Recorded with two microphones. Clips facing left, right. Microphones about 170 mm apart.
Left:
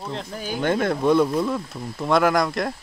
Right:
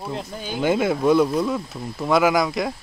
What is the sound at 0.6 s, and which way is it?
Speech, 5° right (ahead or behind).